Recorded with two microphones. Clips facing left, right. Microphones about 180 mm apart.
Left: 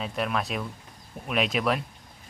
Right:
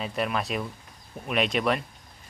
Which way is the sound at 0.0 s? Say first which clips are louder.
Even; centre (ahead or behind).